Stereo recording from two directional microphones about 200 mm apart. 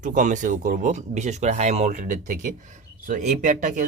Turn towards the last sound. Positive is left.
turn(degrees=-40)  # may be behind; listen again after turning